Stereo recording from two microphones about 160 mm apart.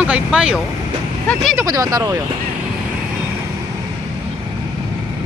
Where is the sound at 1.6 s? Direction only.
20° right (ahead or behind).